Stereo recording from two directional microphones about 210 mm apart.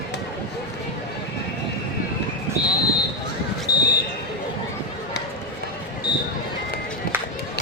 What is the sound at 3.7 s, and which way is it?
Basketball bounce, 45° left (ahead or behind).